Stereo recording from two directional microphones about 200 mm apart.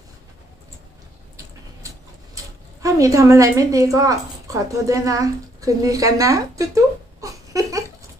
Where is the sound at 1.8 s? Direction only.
15° right (ahead or behind).